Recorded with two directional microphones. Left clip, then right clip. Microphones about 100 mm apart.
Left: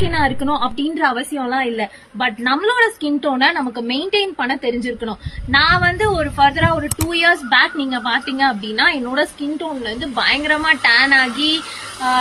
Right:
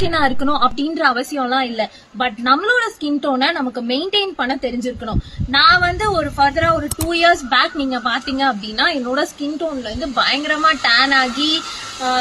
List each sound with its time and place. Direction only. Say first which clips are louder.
0.1 s a woman's voice: right 1 dB; 45° right (ahead or behind)